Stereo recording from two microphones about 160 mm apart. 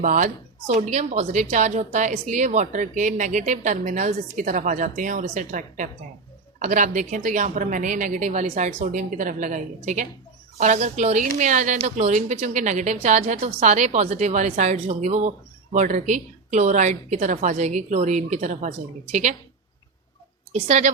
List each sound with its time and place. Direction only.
0.0 s speech: 55° right (ahead or behind)
0.7 s a woman's voice: 45° right (ahead or behind)
20.7 s a woman's voice: 50° right (ahead or behind)